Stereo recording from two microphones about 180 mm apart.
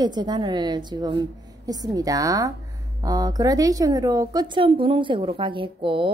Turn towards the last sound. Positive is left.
turn(degrees=-30)  # may be behind; listen again after turning